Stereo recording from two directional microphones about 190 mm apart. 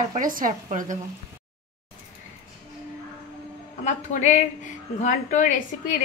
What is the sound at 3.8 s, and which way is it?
A woman's voice, 40° left (ahead or behind).